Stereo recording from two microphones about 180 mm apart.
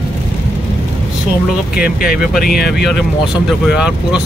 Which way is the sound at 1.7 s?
55° left (ahead or behind).